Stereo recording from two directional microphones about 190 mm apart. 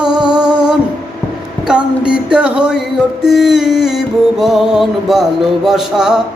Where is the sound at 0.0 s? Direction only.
25° right (ahead or behind).